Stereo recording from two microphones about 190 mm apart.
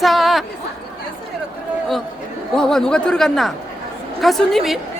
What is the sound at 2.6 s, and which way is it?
Speech, 5° left (ahead or behind).